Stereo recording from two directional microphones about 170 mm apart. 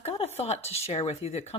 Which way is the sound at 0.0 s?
40° left (ahead or behind).